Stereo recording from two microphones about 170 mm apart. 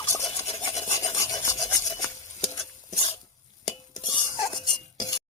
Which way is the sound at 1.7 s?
20° left (ahead or behind).